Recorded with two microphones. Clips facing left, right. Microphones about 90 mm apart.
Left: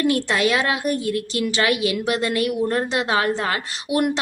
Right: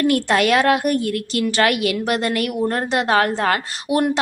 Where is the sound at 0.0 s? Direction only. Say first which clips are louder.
Right 3 dB; 50° right (ahead or behind).